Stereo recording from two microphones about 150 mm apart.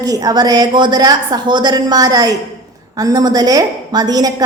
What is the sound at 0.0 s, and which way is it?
A woman's voice, 25° right (ahead or behind).